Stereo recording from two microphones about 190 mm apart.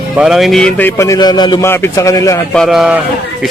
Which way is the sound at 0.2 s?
Centre (ahead or behind).